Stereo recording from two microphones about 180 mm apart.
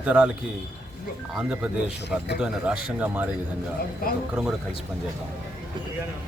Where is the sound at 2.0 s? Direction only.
70° left (ahead or behind).